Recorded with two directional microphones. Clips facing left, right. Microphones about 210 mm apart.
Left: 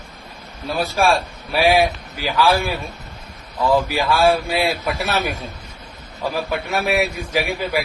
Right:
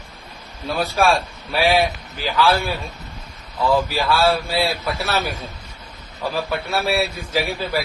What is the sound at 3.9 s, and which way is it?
A man's voice, 15° left (ahead or behind).